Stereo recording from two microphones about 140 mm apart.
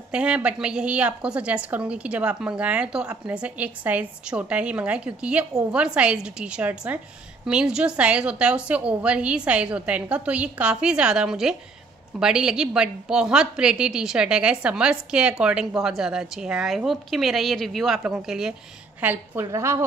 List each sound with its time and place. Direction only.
0.1 s a woman's voice: 10° right (ahead or behind)